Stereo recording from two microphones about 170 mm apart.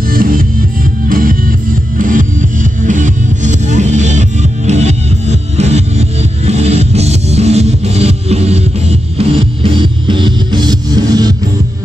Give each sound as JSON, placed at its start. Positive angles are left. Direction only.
{"t": 0.1, "sound": "music", "side_deg": -55}